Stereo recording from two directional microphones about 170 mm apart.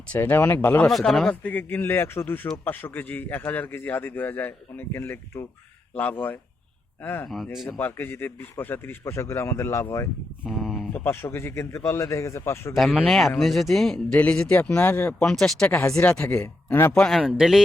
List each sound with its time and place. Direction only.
0.1 s a man's voice: 10° left (ahead or behind)
0.9 s a man's voice: centre (ahead or behind)
7.5 s speech: centre (ahead or behind)
7.8 s a man's voice: 10° left (ahead or behind)
10.4 s speech: centre (ahead or behind)
11.0 s a man's voice: 15° left (ahead or behind)
12.7 s speech: 5° right (ahead or behind)
15.7 s a man's voice: 15° left (ahead or behind); by 17.6 s 5° right (ahead or behind)